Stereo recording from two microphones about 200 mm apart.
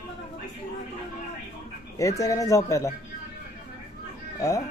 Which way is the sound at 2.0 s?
15° left (ahead or behind).